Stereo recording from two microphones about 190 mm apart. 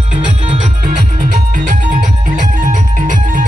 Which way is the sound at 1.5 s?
45° right (ahead or behind).